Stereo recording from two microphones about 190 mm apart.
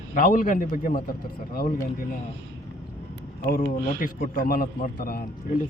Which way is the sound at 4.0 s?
50° left (ahead or behind).